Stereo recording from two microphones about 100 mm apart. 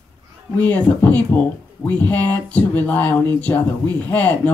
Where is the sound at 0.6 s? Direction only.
20° left (ahead or behind).